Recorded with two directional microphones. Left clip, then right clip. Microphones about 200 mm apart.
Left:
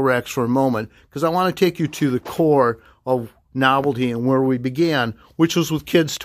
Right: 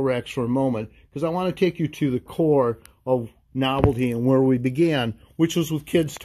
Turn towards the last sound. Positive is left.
turn(degrees=10)  # may be behind; listen again after turning